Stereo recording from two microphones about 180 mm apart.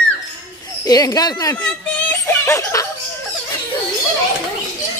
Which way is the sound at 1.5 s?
10° left (ahead or behind).